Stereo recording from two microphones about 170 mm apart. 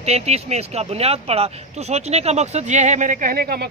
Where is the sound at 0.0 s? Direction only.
40° right (ahead or behind).